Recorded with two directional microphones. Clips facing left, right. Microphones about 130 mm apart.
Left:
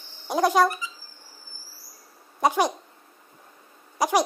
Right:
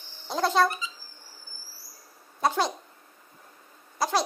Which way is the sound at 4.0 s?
15° left (ahead or behind).